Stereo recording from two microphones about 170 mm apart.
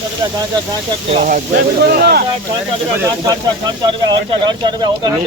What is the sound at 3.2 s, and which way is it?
Speech, 25° right (ahead or behind).